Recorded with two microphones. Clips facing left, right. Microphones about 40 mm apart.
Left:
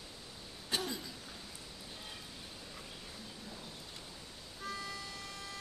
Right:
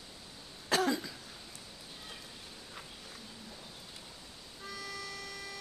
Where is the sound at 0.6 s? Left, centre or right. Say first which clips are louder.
Right 8 dB; right.